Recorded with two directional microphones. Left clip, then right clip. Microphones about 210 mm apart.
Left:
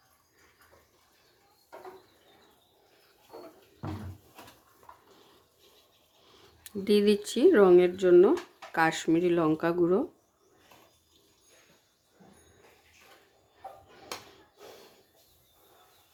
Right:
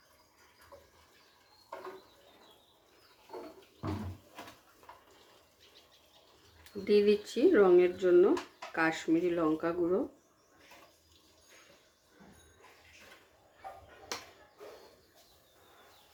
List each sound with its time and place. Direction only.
6.7 s speech: 45° left (ahead or behind)